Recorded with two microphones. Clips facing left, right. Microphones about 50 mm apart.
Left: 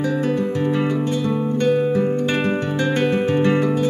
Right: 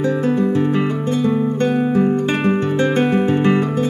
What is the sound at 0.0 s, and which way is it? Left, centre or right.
Music, right.